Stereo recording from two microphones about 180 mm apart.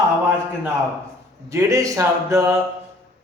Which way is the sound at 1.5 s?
15° right (ahead or behind).